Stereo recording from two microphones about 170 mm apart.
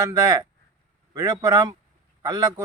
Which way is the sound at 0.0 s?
20° right (ahead or behind).